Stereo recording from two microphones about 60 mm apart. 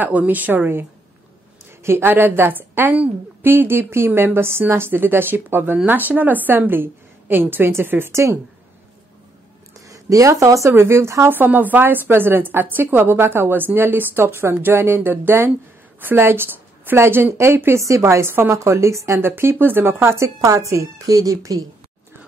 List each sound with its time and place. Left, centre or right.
0.0 s a woman's voice: right
8.1 s speech: right
9.8 s speech: right
10.7 s speech: right
11.2 s a woman's voice: right
17.7 s a woman's voice: right
19.2 s a woman's voice: right
20.3 s speech: right